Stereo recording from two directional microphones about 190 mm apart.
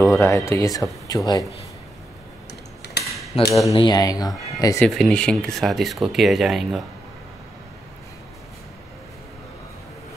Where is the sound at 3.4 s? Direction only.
15° left (ahead or behind).